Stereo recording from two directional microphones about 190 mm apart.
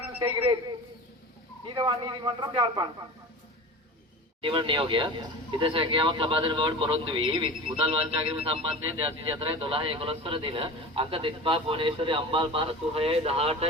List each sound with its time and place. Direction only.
1.7 s speech: 25° right (ahead or behind)
4.4 s speech: 30° right (ahead or behind)